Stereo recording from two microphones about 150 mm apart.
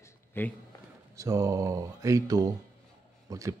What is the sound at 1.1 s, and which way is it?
Speech, 20° right (ahead or behind).